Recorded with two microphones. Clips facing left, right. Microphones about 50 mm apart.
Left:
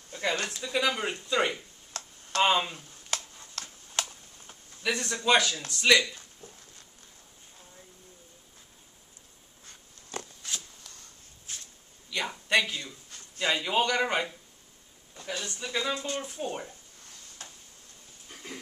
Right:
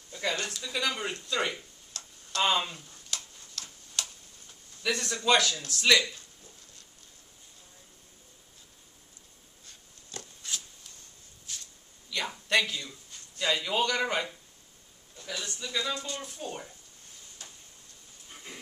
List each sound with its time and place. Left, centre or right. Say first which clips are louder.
0.2 s speech: left 2 dB; centre
3.1 s tick-tock: left 4 dB; left
4.8 s speech: even; centre
9.7 s a sound: left 4 dB; left
12.1 s a sound: left 1 dB; centre
13.4 s speech: left 1 dB; centre
15.4 s speech: left 1 dB; left